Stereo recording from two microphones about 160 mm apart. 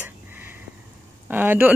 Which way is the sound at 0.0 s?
15° right (ahead or behind).